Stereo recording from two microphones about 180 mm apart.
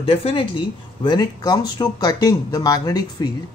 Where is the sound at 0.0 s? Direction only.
30° left (ahead or behind).